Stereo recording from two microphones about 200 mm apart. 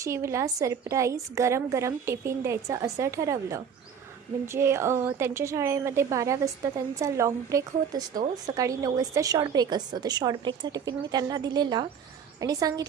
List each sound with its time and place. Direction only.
0.0 s a woman's voice: 15° right (ahead or behind)